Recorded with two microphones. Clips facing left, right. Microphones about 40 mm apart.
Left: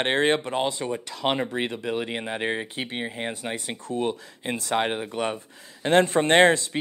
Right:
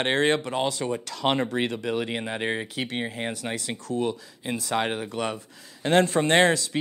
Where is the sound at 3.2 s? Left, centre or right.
Centre.